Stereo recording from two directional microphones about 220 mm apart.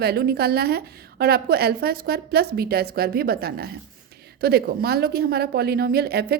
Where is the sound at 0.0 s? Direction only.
45° right (ahead or behind).